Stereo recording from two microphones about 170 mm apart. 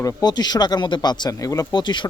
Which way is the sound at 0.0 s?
25° left (ahead or behind).